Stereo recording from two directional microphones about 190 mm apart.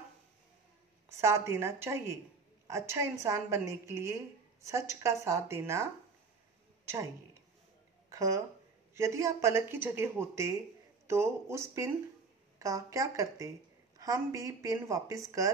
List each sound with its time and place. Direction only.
1.0 s a woman's voice: 15° right (ahead or behind)
8.1 s a woman's voice: 15° right (ahead or behind)